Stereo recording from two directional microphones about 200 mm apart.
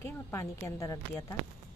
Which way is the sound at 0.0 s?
10° left (ahead or behind).